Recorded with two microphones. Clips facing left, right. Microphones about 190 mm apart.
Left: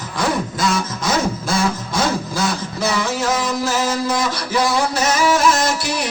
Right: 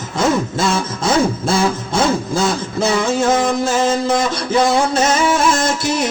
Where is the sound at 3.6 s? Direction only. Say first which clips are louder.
Right 4 dB; 25° right (ahead or behind).